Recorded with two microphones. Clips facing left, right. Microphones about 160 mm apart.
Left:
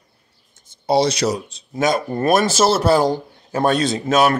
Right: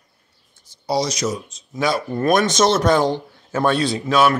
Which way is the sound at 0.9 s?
60° left (ahead or behind).